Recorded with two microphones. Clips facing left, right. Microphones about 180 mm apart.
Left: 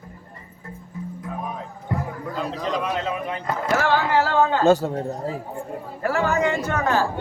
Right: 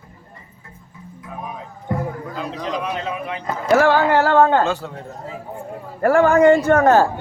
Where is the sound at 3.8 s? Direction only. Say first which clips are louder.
Right 5 dB; 55° right (ahead or behind).